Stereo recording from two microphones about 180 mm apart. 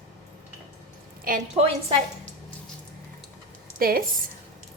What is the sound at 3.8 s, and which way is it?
Speech, 55° right (ahead or behind).